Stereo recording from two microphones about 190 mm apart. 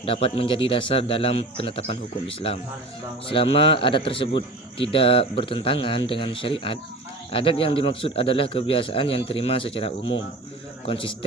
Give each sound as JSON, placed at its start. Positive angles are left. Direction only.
{"t": 0.0, "sound": "a man's voice", "side_deg": 30}